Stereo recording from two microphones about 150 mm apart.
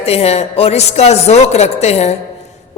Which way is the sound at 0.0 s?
45° left (ahead or behind).